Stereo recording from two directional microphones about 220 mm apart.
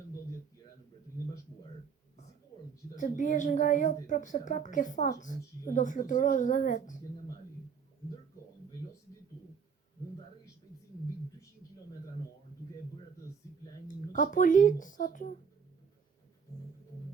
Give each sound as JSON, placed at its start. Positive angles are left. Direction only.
{"t": 2.9, "sound": "speech", "side_deg": 35}
{"t": 13.8, "sound": "speech", "side_deg": 35}